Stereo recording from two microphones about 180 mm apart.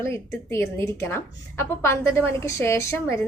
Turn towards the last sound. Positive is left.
turn(degrees=15)  # may be behind; listen again after turning